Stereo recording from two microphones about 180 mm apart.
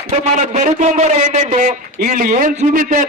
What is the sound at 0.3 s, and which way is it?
A man's voice, 40° right (ahead or behind).